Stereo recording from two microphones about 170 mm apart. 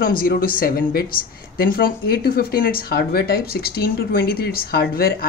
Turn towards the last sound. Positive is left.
turn(degrees=65)  # may be behind; listen again after turning